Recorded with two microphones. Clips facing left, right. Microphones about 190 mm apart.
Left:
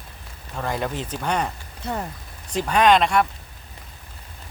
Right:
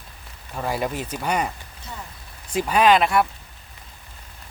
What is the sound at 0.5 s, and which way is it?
Speech, 10° right (ahead or behind).